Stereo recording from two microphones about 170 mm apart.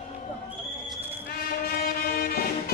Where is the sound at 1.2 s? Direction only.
65° left (ahead or behind).